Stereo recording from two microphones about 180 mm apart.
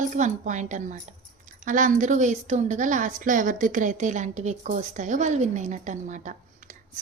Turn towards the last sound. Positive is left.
turn(degrees=-45)  # may be behind; listen again after turning